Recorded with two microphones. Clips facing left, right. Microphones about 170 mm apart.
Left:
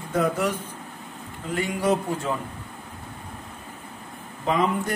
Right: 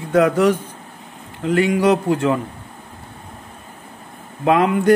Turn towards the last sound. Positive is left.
turn(degrees=-75)  # may be behind; listen again after turning